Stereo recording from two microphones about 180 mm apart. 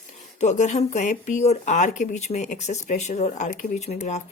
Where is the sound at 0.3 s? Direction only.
40° left (ahead or behind).